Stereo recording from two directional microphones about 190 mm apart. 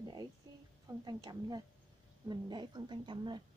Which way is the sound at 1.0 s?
20° right (ahead or behind).